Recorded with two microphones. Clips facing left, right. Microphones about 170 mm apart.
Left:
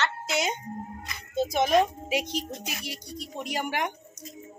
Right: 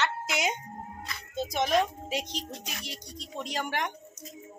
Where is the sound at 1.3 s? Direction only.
5° left (ahead or behind).